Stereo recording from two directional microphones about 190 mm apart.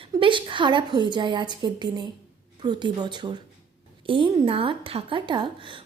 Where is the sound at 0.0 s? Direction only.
25° right (ahead or behind).